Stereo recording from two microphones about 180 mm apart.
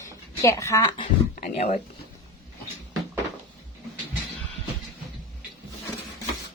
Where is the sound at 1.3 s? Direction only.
40° left (ahead or behind).